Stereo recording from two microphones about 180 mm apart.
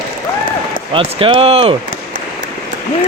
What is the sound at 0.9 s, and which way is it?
Speech, 30° right (ahead or behind).